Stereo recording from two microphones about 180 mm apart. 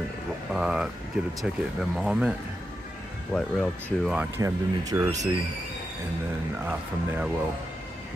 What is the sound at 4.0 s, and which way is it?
Speech, 5° right (ahead or behind).